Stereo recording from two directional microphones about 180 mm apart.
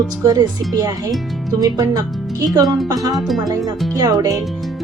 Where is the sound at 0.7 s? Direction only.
20° right (ahead or behind).